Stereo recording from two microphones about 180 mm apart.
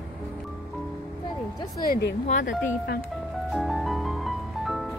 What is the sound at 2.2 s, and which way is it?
Speech, 45° left (ahead or behind).